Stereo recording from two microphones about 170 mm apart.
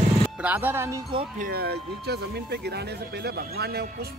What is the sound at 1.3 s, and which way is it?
Speech, 60° right (ahead or behind).